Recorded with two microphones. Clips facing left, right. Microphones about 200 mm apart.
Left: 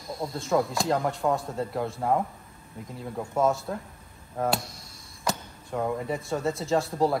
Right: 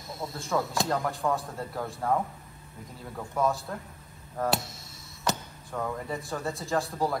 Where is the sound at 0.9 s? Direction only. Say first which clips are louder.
Left 3 dB; 20° left (ahead or behind).